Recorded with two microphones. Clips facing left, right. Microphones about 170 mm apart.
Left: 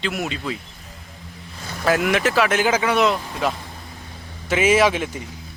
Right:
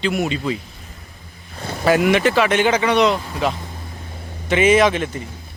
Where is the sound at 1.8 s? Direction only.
Centre (ahead or behind).